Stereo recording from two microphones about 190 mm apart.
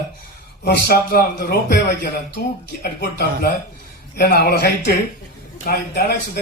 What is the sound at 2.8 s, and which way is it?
Speech, 55° left (ahead or behind).